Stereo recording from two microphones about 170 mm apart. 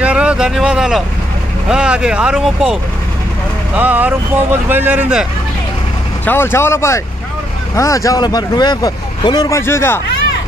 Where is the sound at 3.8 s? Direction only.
10° right (ahead or behind).